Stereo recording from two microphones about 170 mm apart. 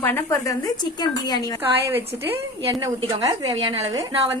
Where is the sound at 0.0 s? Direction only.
10° left (ahead or behind).